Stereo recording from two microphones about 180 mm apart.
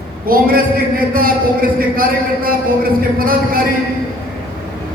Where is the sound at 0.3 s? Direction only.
55° right (ahead or behind).